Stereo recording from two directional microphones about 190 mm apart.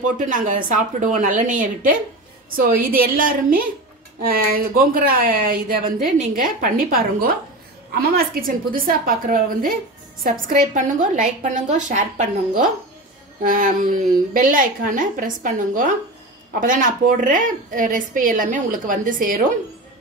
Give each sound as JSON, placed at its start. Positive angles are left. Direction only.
{"t": 0.0, "sound": "a woman's voice", "side_deg": -45}